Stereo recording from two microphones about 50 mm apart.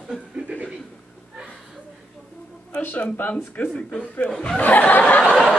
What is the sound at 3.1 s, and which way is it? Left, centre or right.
Speech, left.